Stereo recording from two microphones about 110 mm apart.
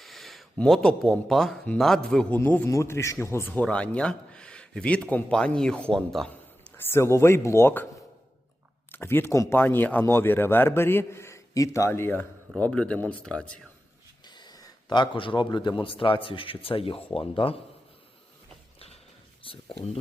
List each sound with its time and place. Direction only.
0.0 s a sound: centre (ahead or behind)
0.8 s a man's voice: 5° left (ahead or behind)
2.3 s a man's voice: 15° left (ahead or behind)
6.7 s speech: 25° left (ahead or behind)
8.9 s speech: 20° left (ahead or behind)
14.3 s a sound: 40° left (ahead or behind)
15.4 s speech: 45° left (ahead or behind)
19.5 s speech: 65° left (ahead or behind)